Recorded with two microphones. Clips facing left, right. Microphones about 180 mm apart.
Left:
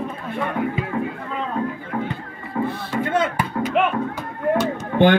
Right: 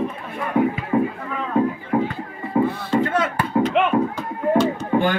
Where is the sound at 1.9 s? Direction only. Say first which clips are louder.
Right 5 dB; 20° right (ahead or behind).